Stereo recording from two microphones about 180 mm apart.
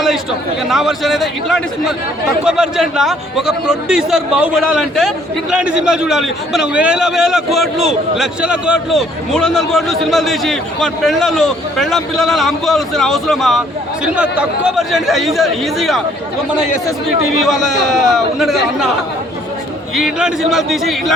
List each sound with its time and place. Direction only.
0.7 s a man's voice: centre (ahead or behind)
17.4 s a man's voice: centre (ahead or behind)
20.0 s a man's voice: 5° right (ahead or behind)